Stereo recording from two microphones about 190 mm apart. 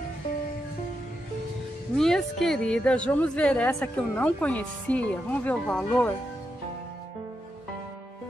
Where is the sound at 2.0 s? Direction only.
Centre (ahead or behind).